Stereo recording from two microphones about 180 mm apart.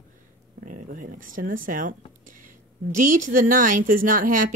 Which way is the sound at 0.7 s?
50° right (ahead or behind).